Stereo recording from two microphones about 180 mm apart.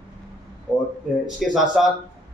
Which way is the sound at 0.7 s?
Centre (ahead or behind).